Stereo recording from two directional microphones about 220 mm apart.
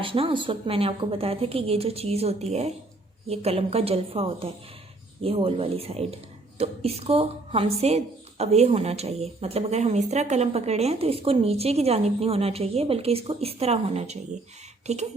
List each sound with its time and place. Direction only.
0.0 s a woman's voice: 25° right (ahead or behind)